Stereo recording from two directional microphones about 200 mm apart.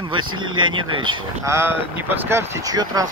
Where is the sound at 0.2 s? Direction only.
90° right.